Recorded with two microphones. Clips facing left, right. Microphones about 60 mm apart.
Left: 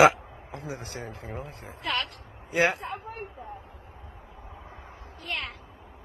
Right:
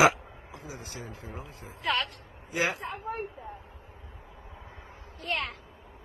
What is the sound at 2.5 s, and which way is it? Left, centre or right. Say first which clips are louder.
Speech: left 5 dB; left.